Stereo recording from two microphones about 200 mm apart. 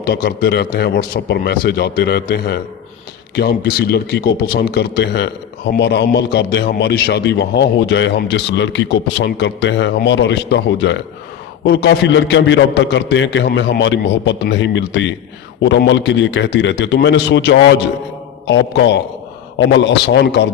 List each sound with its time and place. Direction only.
0.0 s a man's voice: 55° left (ahead or behind)